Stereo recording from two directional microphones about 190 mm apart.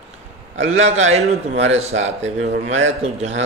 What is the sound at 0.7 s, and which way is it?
Speech, 35° right (ahead or behind).